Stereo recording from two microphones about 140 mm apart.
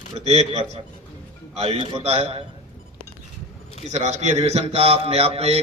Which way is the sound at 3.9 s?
55° right (ahead or behind).